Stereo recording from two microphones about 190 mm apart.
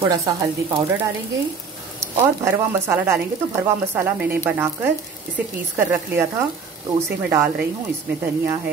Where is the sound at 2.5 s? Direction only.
10° right (ahead or behind).